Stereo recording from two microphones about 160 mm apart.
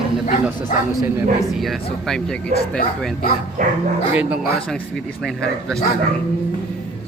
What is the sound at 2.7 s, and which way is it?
Speech, 60° left (ahead or behind).